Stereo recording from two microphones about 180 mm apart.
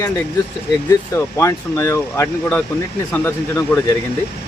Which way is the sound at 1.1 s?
15° left (ahead or behind).